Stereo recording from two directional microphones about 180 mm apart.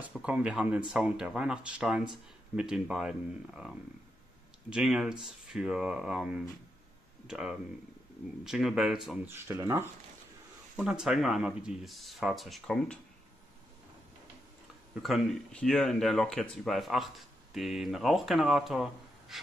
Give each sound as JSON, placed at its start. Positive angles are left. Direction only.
{"t": 0.0, "sound": "speech", "side_deg": -5}
{"t": 9.3, "sound": "speech", "side_deg": -15}
{"t": 10.8, "sound": "speech", "side_deg": -5}
{"t": 15.0, "sound": "speech", "side_deg": 0}